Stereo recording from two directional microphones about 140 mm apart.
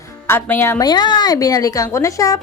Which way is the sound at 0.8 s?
30° left (ahead or behind).